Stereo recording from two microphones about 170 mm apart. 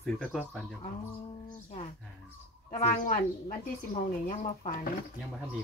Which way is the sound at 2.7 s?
50° left (ahead or behind).